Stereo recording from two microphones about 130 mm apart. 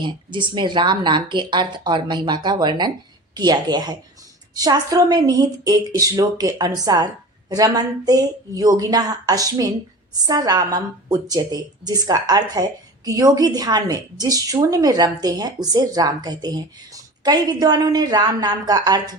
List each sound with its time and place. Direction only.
0.0 s a woman's voice: 35° right (ahead or behind)